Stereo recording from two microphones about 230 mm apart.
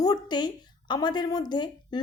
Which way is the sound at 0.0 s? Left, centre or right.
Centre.